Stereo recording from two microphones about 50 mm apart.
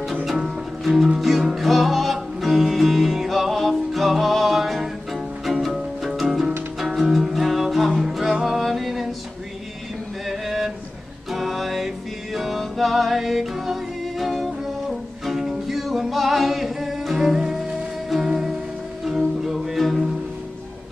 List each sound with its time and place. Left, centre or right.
0.1 s music: centre
10.2 s a sound: centre
11.3 s music: centre